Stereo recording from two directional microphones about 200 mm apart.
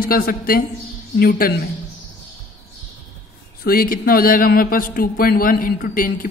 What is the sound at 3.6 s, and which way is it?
Speech, 45° left (ahead or behind).